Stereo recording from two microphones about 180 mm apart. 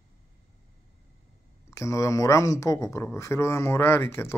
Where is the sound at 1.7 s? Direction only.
15° left (ahead or behind).